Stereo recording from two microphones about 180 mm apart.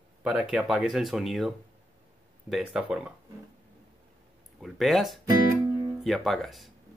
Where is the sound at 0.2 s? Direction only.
5° right (ahead or behind).